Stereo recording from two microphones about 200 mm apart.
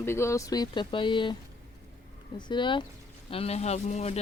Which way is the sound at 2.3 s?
25° left (ahead or behind).